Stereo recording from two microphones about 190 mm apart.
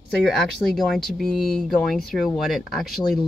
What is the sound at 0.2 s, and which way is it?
Speech, centre (ahead or behind).